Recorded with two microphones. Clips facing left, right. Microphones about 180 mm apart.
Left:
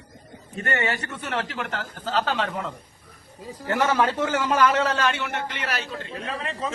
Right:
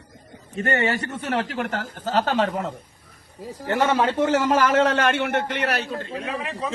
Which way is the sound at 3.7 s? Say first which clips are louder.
Right 1 dB; 25° right (ahead or behind).